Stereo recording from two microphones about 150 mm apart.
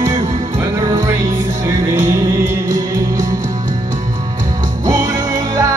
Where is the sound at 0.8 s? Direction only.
20° right (ahead or behind).